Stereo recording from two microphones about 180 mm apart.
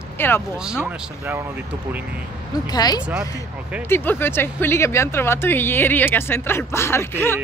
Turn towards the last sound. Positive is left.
turn(degrees=10)  # may be behind; listen again after turning